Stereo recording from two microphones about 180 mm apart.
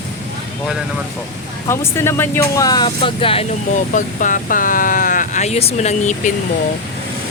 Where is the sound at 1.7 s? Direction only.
15° left (ahead or behind); by 6.3 s 40° left (ahead or behind).